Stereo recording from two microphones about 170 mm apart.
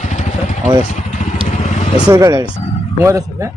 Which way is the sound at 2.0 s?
20° right (ahead or behind).